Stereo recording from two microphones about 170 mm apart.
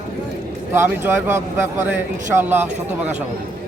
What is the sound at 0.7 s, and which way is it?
Speech, 15° right (ahead or behind).